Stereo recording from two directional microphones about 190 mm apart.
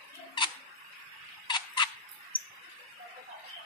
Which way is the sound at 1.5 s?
25° left (ahead or behind).